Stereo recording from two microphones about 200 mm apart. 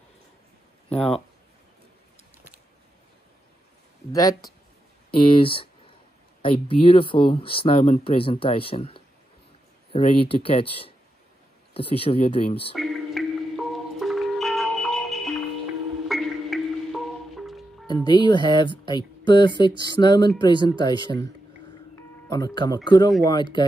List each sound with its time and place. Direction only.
4.1 s speech: 15° left (ahead or behind)
12.7 s music: centre (ahead or behind)
17.8 s speech: 20° left (ahead or behind)
21.9 s music: 20° left (ahead or behind)
22.8 s speech: 20° left (ahead or behind)